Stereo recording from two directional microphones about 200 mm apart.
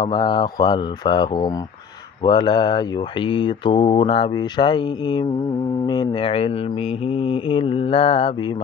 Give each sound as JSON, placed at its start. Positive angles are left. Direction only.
{"t": 0.0, "sound": "speech", "side_deg": 25}